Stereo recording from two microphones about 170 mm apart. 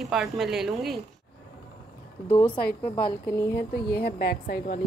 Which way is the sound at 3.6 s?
70° left (ahead or behind).